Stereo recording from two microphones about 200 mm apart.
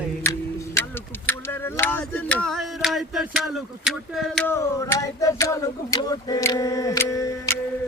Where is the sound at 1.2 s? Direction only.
10° left (ahead or behind).